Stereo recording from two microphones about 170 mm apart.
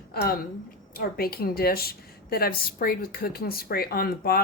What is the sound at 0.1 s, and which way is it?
A woman's voice, 65° left (ahead or behind).